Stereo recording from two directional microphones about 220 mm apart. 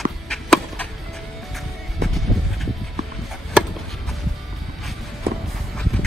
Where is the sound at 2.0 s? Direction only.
Centre (ahead or behind).